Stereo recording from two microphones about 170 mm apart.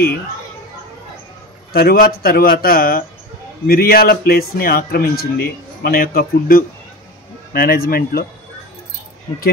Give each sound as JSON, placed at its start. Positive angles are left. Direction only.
{"t": 1.7, "sound": "a man's voice", "side_deg": 65}